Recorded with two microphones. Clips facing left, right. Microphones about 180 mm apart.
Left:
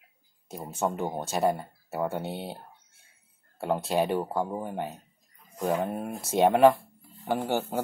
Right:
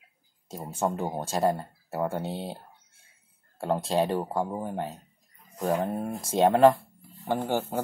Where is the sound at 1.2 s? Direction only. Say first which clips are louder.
Right 1 dB; 10° left (ahead or behind).